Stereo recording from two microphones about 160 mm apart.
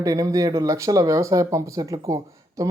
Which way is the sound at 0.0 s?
20° right (ahead or behind).